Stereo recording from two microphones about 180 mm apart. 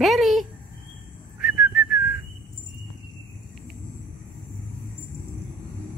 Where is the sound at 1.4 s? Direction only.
Centre (ahead or behind).